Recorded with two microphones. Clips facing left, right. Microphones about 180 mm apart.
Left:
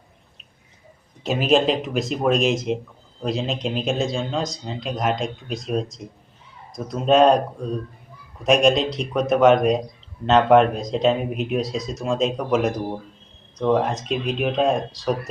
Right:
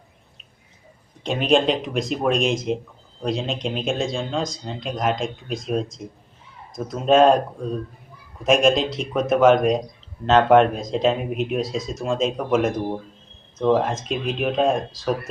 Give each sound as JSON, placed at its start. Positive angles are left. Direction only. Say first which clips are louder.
{"t": 1.2, "sound": "speech", "louder": "even", "side_deg": 5}